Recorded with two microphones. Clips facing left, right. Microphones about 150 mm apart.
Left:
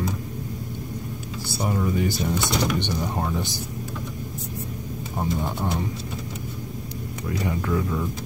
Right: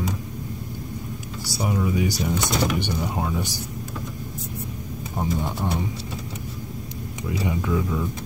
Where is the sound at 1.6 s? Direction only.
5° right (ahead or behind).